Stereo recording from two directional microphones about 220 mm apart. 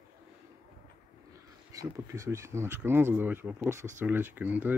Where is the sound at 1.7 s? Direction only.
15° right (ahead or behind).